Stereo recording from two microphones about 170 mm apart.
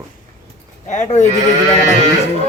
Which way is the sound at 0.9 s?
45° left (ahead or behind).